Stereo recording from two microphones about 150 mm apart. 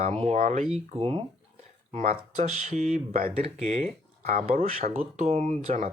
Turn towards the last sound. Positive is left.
turn(degrees=-50)  # may be behind; listen again after turning